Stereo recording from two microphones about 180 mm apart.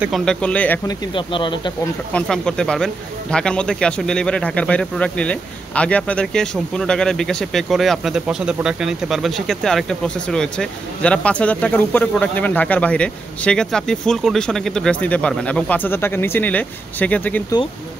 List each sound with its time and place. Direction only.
0.0 s speech: centre (ahead or behind)
0.8 s speech: 25° left (ahead or behind)
2.1 s speech: 5° left (ahead or behind)